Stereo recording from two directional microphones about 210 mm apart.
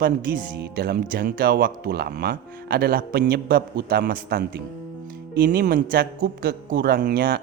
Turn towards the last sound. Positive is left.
turn(degrees=-45)  # may be behind; listen again after turning